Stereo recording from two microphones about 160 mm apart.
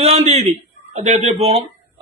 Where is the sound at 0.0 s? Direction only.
40° right (ahead or behind).